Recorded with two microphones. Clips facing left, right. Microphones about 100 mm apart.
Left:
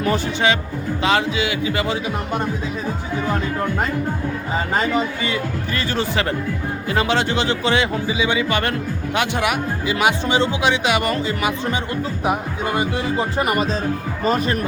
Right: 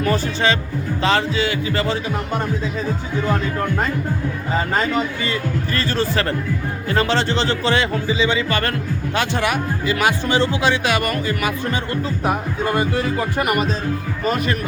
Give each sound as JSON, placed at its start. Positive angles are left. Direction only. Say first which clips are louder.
{"t": 0.0, "sound": "speech", "louder": "even", "side_deg": 20}
{"t": 4.9, "sound": "speech", "louder": "left 1 dB", "side_deg": 15}